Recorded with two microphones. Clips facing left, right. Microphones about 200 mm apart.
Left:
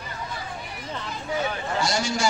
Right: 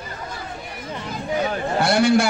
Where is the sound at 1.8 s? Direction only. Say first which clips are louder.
Right 10 dB; 60° right (ahead or behind).